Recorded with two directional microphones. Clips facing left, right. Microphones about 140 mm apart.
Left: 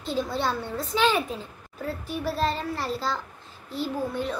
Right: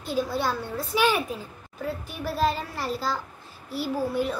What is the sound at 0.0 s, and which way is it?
Speech, 25° left (ahead or behind).